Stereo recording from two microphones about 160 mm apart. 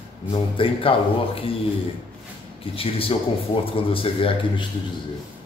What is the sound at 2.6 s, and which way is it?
Speech, 35° left (ahead or behind).